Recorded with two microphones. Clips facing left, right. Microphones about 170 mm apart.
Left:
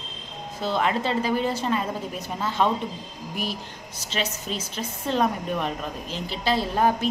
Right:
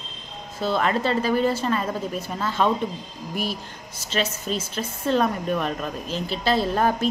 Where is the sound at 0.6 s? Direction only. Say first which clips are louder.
Right 2 dB; 15° left (ahead or behind).